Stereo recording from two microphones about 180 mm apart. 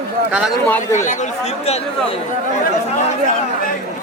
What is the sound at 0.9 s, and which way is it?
Speech, 40° left (ahead or behind).